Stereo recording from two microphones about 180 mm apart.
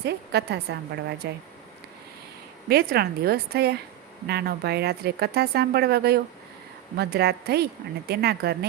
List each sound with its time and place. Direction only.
0.0 s a woman's voice: 65° right (ahead or behind)
2.6 s speech: 60° right (ahead or behind)